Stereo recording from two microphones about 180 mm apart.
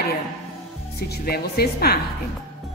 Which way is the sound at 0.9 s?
60° left (ahead or behind).